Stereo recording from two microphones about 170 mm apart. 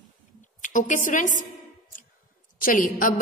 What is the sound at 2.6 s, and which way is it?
Speech, 55° left (ahead or behind).